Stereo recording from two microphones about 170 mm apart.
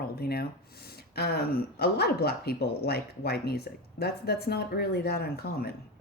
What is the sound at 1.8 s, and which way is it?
Speech, 70° left (ahead or behind).